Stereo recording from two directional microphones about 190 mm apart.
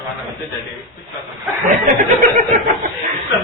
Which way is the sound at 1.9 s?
45° right (ahead or behind).